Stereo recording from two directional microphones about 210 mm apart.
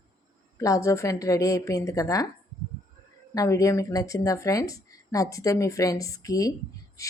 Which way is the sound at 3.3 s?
15° left (ahead or behind).